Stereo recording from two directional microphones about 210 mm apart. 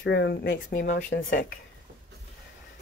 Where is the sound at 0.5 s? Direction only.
40° left (ahead or behind).